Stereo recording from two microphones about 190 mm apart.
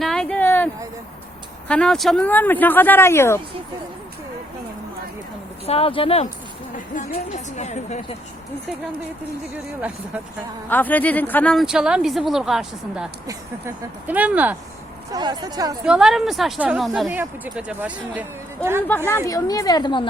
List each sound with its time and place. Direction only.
0.0 s a sound: centre (ahead or behind)
1.6 s speech: 5° left (ahead or behind)
5.6 s speech: 30° left (ahead or behind)
10.7 s speech: 10° left (ahead or behind); by 14.5 s 10° right (ahead or behind)
15.1 s speech: 20° right (ahead or behind)
15.9 s speech: 5° right (ahead or behind)
18.9 s a woman's voice: 10° left (ahead or behind)